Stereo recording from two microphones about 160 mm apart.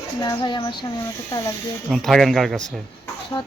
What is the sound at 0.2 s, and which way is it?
Speech, 25° left (ahead or behind).